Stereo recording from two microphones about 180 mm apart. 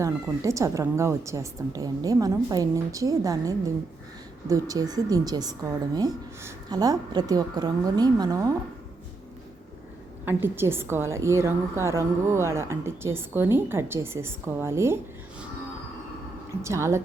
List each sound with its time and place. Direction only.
0.0 s a woman's voice: 15° right (ahead or behind)
10.2 s a woman's voice: 10° right (ahead or behind)
16.6 s a woman's voice: 15° right (ahead or behind)